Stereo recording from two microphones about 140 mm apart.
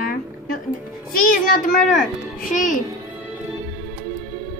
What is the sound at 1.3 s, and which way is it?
Speech, 80° left.